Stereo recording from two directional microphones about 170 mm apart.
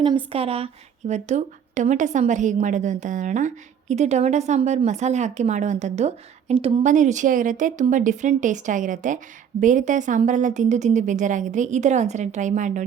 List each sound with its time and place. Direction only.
0.3 s a woman's voice: 35° right (ahead or behind)
6.8 s a woman's voice: 45° right (ahead or behind)